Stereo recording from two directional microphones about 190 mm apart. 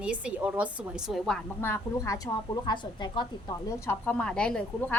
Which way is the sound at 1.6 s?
10° left (ahead or behind).